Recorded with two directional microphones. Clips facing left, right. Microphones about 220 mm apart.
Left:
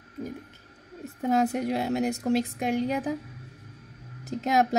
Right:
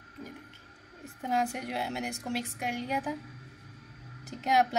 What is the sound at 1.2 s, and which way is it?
Speech, 40° left (ahead or behind).